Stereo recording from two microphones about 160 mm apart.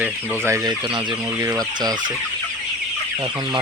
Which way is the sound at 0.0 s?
15° right (ahead or behind).